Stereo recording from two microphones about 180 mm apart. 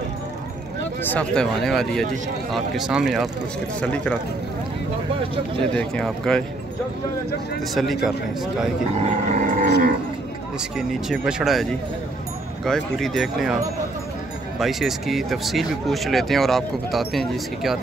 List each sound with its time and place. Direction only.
1.0 s speech: 5° left (ahead or behind)
5.8 s speech: 5° left (ahead or behind)
7.7 s speech: centre (ahead or behind)
8.9 s speech: 40° right (ahead or behind)
10.8 s speech: centre (ahead or behind)
14.6 s speech: centre (ahead or behind)